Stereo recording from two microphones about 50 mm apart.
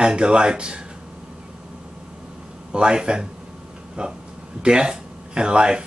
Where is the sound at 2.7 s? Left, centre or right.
Centre.